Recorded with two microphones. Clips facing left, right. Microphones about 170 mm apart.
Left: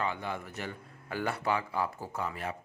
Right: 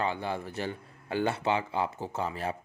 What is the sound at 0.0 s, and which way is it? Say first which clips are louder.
Speech: right 3 dB; 30° right (ahead or behind).